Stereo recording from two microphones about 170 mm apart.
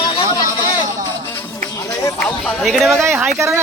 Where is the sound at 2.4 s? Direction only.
Centre (ahead or behind).